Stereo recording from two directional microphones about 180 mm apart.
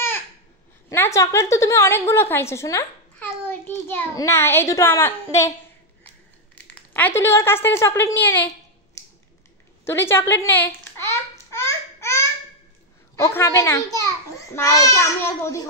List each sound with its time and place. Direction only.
0.8 s a woman's voice: 15° left (ahead or behind)
6.7 s a woman's voice: 10° left (ahead or behind)
9.8 s a sound: 15° left (ahead or behind)
13.2 s a woman's voice: 15° left (ahead or behind)